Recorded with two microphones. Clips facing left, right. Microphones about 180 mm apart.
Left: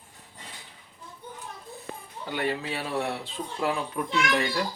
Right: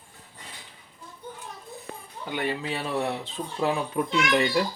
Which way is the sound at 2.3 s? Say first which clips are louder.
Even; 15° right (ahead or behind).